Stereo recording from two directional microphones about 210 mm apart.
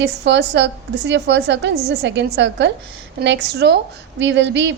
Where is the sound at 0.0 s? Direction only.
55° right (ahead or behind).